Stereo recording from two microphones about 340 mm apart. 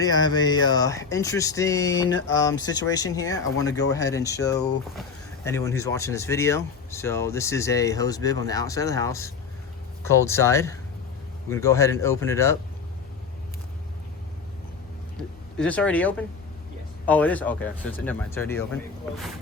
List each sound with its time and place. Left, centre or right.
0.0 s speech: centre
2.0 s a sound: left
2.3 s speech: centre
15.5 s speech: centre